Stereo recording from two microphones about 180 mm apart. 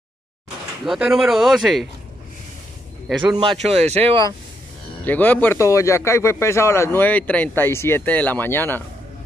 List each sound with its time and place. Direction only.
0.8 s speech: 5° right (ahead or behind)
3.3 s speech: 30° right (ahead or behind)
5.0 s speech: 10° left (ahead or behind)